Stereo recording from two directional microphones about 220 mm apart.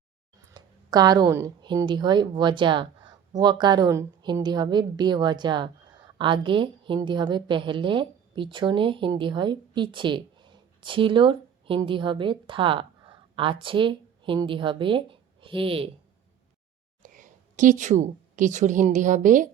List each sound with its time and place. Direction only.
0.4 s a woman's voice: 15° right (ahead or behind)
17.0 s a woman's voice: 35° right (ahead or behind)